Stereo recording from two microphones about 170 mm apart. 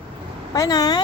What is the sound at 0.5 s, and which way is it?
Speech, 20° left (ahead or behind).